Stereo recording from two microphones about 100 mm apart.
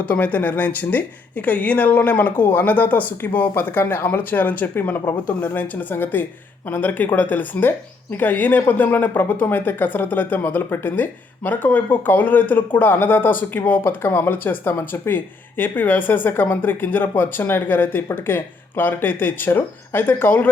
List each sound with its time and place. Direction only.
0.0 s speech: 15° left (ahead or behind)